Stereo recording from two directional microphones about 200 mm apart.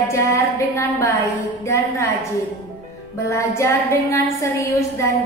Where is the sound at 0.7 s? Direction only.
15° left (ahead or behind).